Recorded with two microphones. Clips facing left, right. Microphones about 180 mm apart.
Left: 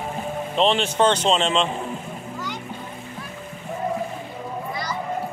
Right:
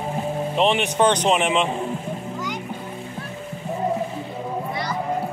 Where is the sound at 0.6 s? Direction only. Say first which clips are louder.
Even; 15° right (ahead or behind).